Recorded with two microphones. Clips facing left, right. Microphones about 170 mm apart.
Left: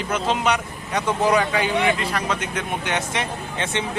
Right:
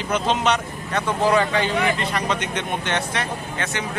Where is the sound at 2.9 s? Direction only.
20° left (ahead or behind).